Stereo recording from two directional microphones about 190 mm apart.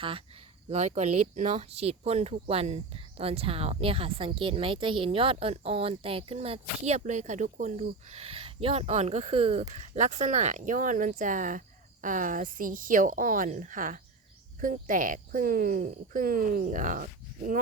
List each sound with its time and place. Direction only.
0.0 s speech: 30° right (ahead or behind); by 17.6 s 45° right (ahead or behind)